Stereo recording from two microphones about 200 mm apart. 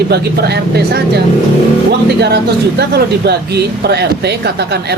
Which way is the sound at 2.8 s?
55° right (ahead or behind).